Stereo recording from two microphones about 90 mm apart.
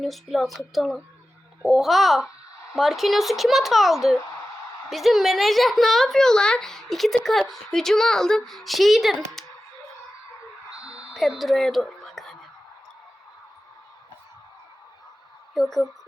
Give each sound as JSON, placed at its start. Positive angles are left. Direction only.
{"t": 0.0, "sound": "a woman's voice", "side_deg": 0}
{"t": 9.1, "sound": "a sound", "side_deg": 5}
{"t": 11.1, "sound": "music", "side_deg": 0}
{"t": 15.5, "sound": "a woman's voice", "side_deg": 0}